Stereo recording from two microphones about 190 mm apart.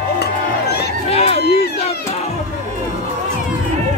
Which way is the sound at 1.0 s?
30° left (ahead or behind).